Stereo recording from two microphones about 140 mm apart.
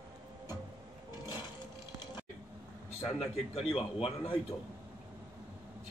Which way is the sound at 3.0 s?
45° left (ahead or behind).